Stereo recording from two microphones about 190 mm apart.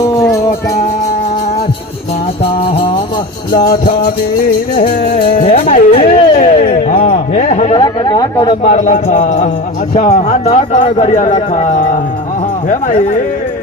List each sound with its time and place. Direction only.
0.1 s music: 15° left (ahead or behind)
3.7 s speech: 50° left (ahead or behind)
5.2 s speech: 45° left (ahead or behind)
6.3 s a sound: 45° left (ahead or behind)
7.1 s speech: 40° left (ahead or behind); by 8.5 s 20° left (ahead or behind)
8.6 s speech: 40° left (ahead or behind)